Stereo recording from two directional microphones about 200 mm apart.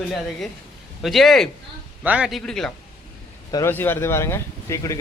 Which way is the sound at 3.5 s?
15° left (ahead or behind).